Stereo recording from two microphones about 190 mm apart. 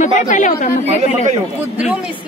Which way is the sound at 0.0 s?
40° left (ahead or behind).